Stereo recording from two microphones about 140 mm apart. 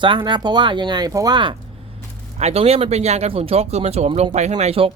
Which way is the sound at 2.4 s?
45° right (ahead or behind).